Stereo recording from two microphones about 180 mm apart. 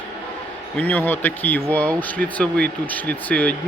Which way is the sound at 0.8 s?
10° left (ahead or behind).